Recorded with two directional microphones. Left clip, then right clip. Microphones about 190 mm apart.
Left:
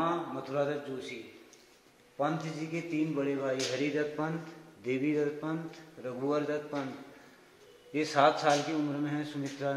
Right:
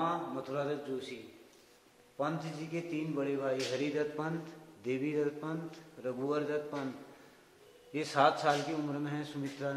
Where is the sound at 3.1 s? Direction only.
Centre (ahead or behind).